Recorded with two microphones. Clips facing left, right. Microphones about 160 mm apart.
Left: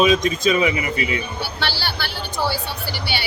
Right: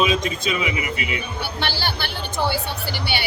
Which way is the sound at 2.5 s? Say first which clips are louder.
Right 1 dB; 50° right (ahead or behind).